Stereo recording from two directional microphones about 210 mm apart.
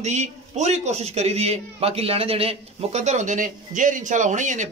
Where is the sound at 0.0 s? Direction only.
35° right (ahead or behind).